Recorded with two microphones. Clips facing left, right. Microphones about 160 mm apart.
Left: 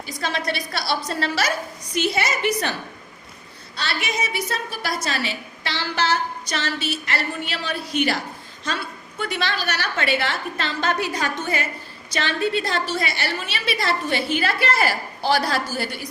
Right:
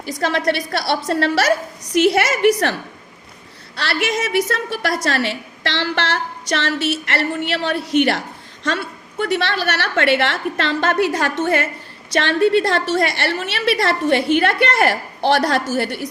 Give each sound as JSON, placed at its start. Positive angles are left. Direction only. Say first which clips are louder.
{"t": 0.0, "sound": "a woman's voice", "louder": "right 7 dB", "side_deg": -75}
{"t": 3.8, "sound": "a woman's voice", "louder": "right 6 dB", "side_deg": -85}